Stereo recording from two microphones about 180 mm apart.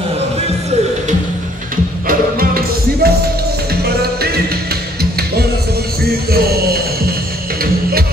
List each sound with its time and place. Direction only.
2.0 s music: 55° right (ahead or behind)
6.0 s music: 60° right (ahead or behind)